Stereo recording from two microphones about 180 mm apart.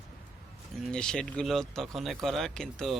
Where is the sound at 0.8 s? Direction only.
5° left (ahead or behind).